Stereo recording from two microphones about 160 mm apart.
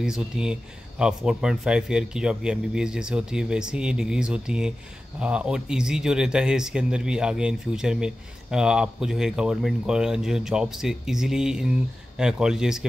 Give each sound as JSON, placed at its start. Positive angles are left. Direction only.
{"t": 0.0, "sound": "speech", "side_deg": -5}